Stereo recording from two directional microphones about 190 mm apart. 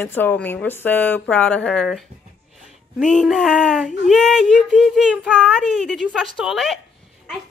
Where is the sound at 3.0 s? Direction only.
Centre (ahead or behind).